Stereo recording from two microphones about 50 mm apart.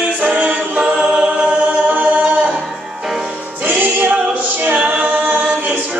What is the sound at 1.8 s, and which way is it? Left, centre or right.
A capella, right.